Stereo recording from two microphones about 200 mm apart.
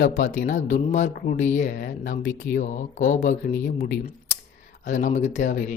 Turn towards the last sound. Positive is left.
turn(degrees=40)  # may be behind; listen again after turning